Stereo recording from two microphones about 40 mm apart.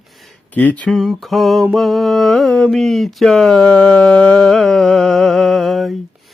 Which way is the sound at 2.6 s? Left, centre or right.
Centre.